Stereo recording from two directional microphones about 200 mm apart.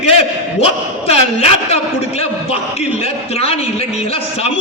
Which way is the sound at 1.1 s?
30° left (ahead or behind).